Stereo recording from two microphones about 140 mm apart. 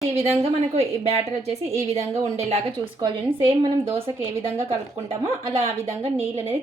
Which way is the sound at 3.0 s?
35° right (ahead or behind).